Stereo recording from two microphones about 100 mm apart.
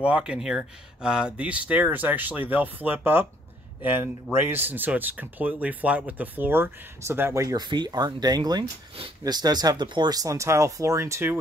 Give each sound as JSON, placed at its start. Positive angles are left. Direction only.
{"t": 0.0, "sound": "speech", "side_deg": -10}
{"t": 7.5, "sound": "speech", "side_deg": -45}